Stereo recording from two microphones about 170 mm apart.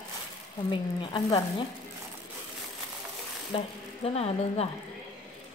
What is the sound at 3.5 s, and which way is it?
Speech, 30° left (ahead or behind).